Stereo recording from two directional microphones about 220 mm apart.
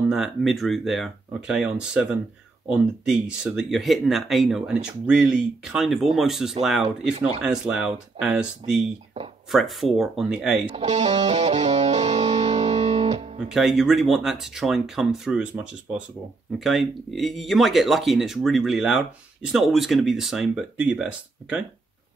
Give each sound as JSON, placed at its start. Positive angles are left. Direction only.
{"t": 0.1, "sound": "speech", "side_deg": 0}
{"t": 10.8, "sound": "music", "side_deg": -30}
{"t": 13.5, "sound": "speech", "side_deg": 0}